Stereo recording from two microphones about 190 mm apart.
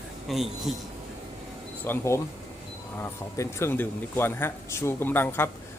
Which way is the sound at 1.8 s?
10° left (ahead or behind).